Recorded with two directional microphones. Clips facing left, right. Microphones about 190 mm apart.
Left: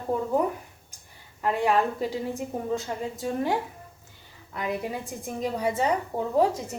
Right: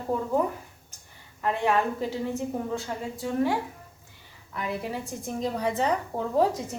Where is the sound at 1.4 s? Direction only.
15° left (ahead or behind).